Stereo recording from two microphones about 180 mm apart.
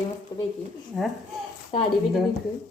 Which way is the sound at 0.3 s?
25° left (ahead or behind).